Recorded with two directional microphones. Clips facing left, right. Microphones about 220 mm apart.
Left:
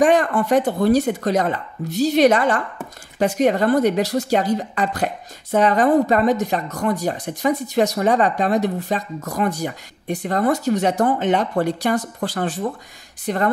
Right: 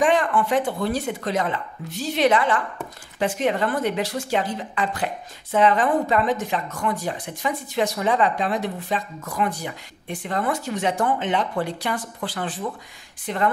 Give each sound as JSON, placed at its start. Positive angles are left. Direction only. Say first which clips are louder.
{"t": 0.0, "sound": "speech", "louder": "left 4 dB", "side_deg": 40}